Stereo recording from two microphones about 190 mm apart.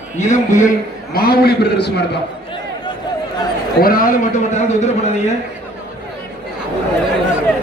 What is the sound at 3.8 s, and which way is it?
A man's voice, 50° left (ahead or behind).